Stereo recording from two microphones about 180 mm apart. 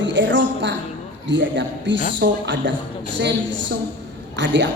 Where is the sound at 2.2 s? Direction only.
75° right (ahead or behind).